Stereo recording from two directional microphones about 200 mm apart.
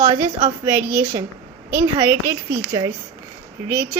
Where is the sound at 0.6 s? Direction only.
10° right (ahead or behind).